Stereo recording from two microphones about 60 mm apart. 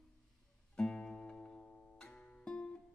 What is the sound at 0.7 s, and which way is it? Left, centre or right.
Music, centre.